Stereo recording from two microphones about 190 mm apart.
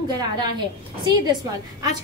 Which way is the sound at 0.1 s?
20° right (ahead or behind).